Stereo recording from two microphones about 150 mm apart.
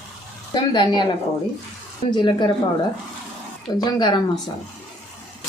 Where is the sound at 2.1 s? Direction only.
30° left (ahead or behind).